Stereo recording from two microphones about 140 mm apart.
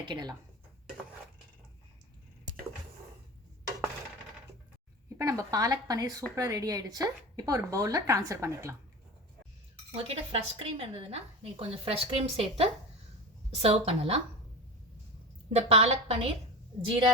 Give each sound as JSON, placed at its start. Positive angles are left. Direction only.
{"t": 0.0, "sound": "speech", "side_deg": -30}
{"t": 5.0, "sound": "a woman's voice", "side_deg": -20}
{"t": 9.9, "sound": "a woman's voice", "side_deg": -45}
{"t": 15.4, "sound": "a woman's voice", "side_deg": -50}